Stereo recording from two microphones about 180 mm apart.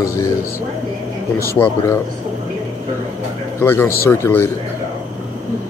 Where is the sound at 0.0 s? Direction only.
20° left (ahead or behind).